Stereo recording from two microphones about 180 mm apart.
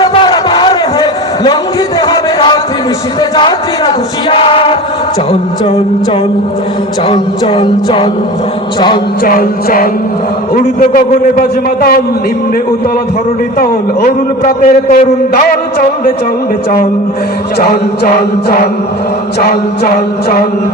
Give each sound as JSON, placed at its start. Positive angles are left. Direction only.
{"t": 0.0, "sound": "a sound", "side_deg": 25}
{"t": 3.2, "sound": "music", "side_deg": 25}
{"t": 7.1, "sound": "music", "side_deg": 30}
{"t": 9.2, "sound": "a man's voice", "side_deg": 50}
{"t": 13.6, "sound": "a man's voice", "side_deg": 50}
{"t": 17.6, "sound": "a man's voice", "side_deg": 55}
{"t": 19.4, "sound": "chant", "side_deg": 55}